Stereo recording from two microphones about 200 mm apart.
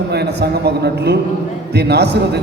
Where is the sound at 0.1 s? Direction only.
55° right (ahead or behind).